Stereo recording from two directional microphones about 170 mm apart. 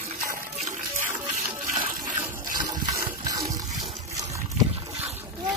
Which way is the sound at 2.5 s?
20° right (ahead or behind).